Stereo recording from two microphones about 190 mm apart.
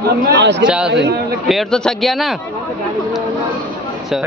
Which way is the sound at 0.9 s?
65° right (ahead or behind).